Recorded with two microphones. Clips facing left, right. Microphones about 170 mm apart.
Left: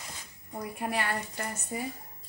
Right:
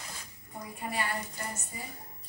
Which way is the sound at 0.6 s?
65° left (ahead or behind).